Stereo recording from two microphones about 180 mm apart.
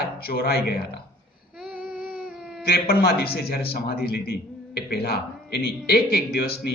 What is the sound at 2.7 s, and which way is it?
A man's voice, 60° left (ahead or behind).